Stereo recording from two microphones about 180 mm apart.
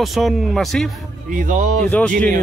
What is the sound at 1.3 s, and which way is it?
Speech, 45° right (ahead or behind).